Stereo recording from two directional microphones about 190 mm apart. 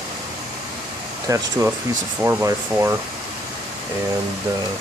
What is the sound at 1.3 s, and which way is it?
Speech, 15° right (ahead or behind).